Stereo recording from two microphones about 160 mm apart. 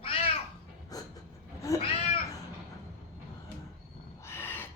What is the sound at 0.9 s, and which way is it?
Train, 20° left (ahead or behind).